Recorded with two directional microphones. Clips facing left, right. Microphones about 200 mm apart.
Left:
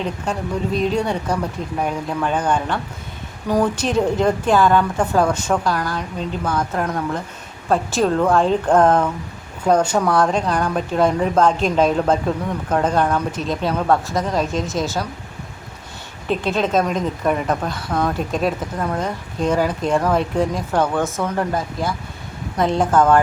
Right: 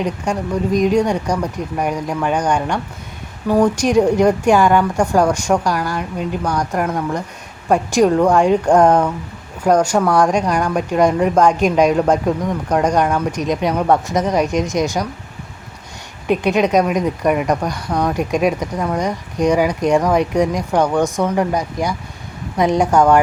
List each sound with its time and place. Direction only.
0.0 s speech: 15° right (ahead or behind)
16.2 s speech: 15° right (ahead or behind)